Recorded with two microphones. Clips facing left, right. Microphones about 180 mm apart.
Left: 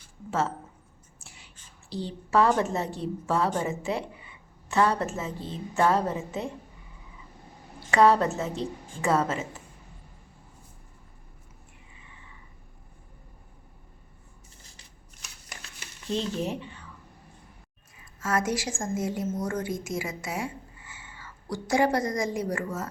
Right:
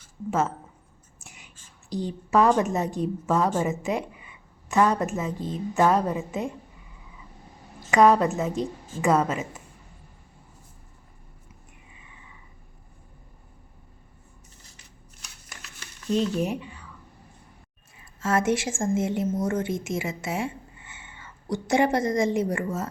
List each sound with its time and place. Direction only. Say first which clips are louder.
0.3 s a woman's voice: right 3 dB; 15° right (ahead or behind)
7.9 s a woman's voice: right 2 dB; 15° right (ahead or behind)
16.1 s a woman's voice: right 5 dB; 10° right (ahead or behind)
18.2 s a woman's voice: right 4 dB; 25° right (ahead or behind)